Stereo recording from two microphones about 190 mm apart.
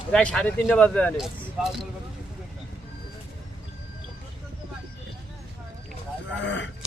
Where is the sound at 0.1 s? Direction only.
5° left (ahead or behind).